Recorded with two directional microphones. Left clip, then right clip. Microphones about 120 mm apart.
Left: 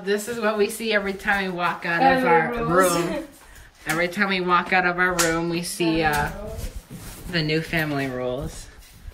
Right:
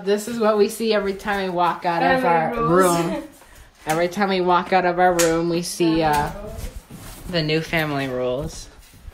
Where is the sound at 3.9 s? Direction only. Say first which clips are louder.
Right 2 dB; 20° right (ahead or behind).